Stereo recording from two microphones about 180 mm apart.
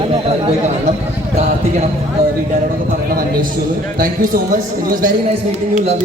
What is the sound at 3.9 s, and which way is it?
A man's voice, 50° right (ahead or behind).